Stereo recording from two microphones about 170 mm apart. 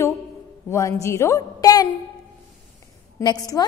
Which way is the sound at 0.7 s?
15° left (ahead or behind).